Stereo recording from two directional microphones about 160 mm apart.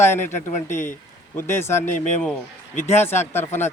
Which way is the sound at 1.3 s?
15° left (ahead or behind).